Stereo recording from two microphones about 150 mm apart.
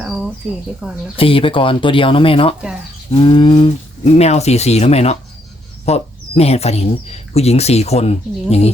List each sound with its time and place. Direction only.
0.0 s a sound: 5° right (ahead or behind)
1.1 s speech: 35° left (ahead or behind)
4.0 s speech: 45° left (ahead or behind)